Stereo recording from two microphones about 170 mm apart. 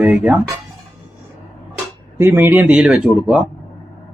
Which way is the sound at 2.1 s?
15° right (ahead or behind).